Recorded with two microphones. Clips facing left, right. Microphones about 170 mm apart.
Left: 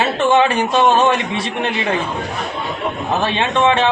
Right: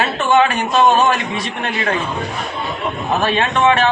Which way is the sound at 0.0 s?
30° left (ahead or behind).